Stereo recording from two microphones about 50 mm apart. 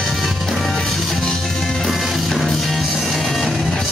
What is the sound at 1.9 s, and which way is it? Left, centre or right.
Music, centre.